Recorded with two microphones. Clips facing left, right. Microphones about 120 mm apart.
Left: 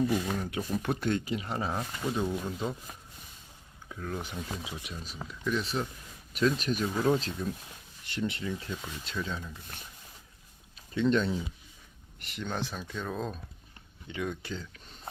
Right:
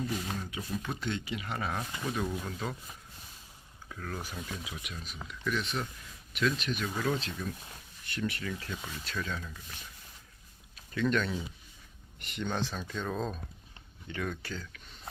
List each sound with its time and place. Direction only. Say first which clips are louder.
0.3 s speech: left 5 dB; 50° left (ahead or behind); by 1.7 s 30° left (ahead or behind)
1.7 s speech: left 3 dB; 15° left (ahead or behind)
3.8 s speech: left 3 dB; 20° left (ahead or behind); by 6.8 s 40° left (ahead or behind)
6.8 s speech: left 6 dB; 25° left (ahead or behind)
8.0 s speech: left 2 dB; 25° left (ahead or behind)
8.8 s speech: left 1 dB; centre (ahead or behind)
9.0 s speech: left 1 dB; 20° left (ahead or behind)
10.9 s speech: left 3 dB; 25° left (ahead or behind)
12.2 s speech: right 1 dB; centre (ahead or behind)
14.1 s speech: left 2 dB; 15° left (ahead or behind)